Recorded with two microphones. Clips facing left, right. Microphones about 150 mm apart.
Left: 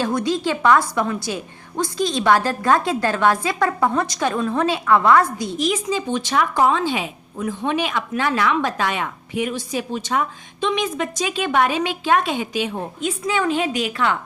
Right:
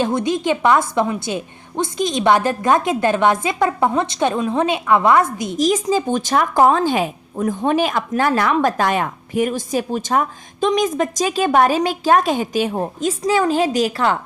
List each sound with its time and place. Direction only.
0.0 s a woman's voice: 20° right (ahead or behind)
5.5 s a woman's voice: 40° right (ahead or behind)